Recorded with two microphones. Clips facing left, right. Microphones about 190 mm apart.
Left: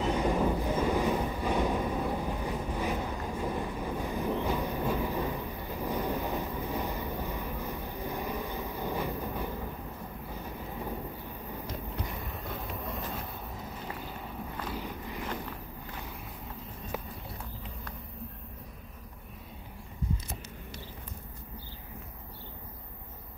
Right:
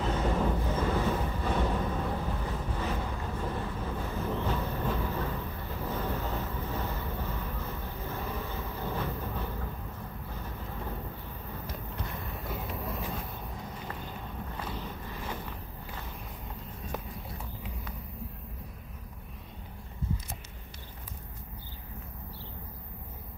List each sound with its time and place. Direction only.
0.0 s train: 15° left (ahead or behind)
10.4 s vehicle: 10° left (ahead or behind)
12.4 s vehicle: centre (ahead or behind)
14.7 s vehicle: 15° left (ahead or behind)